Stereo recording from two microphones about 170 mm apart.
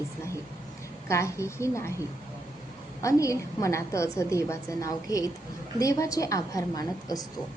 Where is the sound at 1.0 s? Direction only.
15° left (ahead or behind).